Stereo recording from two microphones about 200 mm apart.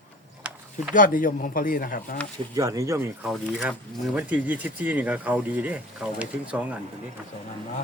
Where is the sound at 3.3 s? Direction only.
Centre (ahead or behind).